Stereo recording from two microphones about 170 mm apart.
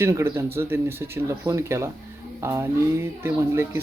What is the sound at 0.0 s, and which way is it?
Speech, 15° right (ahead or behind).